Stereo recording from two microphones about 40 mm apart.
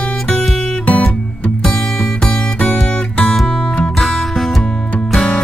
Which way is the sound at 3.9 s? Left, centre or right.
Centre.